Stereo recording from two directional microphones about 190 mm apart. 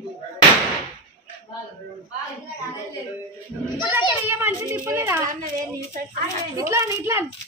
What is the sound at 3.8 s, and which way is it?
A child's voice, 10° right (ahead or behind).